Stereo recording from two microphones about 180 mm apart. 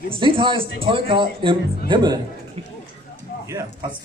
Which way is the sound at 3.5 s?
20° right (ahead or behind).